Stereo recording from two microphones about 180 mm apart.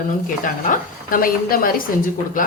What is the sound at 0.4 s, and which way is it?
Speech, 50° left (ahead or behind).